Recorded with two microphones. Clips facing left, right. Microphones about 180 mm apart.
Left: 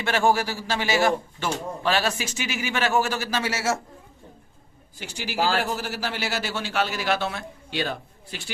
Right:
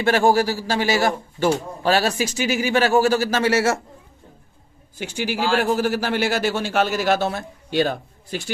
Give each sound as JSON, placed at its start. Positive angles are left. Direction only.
{"t": 0.0, "sound": "a man's voice", "side_deg": -35}
{"t": 4.9, "sound": "a man's voice", "side_deg": -50}